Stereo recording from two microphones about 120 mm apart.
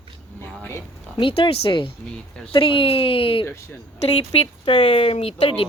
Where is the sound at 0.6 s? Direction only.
20° left (ahead or behind).